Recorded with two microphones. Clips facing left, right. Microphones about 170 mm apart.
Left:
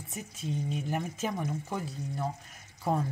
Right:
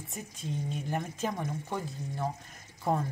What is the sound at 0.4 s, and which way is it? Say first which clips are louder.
Speech: left 2 dB; 5° left (ahead or behind).